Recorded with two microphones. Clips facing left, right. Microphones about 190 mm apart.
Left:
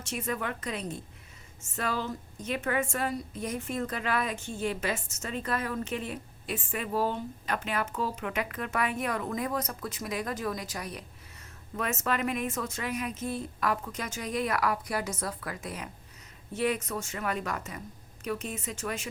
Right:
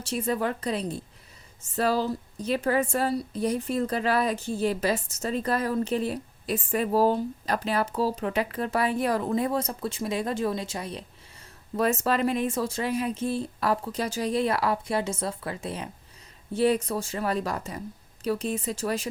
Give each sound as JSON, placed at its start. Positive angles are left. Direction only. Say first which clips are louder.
{"t": 0.0, "sound": "a woman's voice", "louder": "right 6 dB", "side_deg": -35}